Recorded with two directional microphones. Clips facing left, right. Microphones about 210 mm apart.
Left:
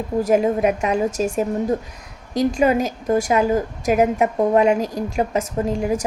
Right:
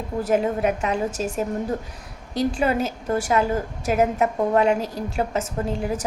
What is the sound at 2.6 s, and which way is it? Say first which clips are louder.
A woman's voice: left 4 dB; 15° left (ahead or behind).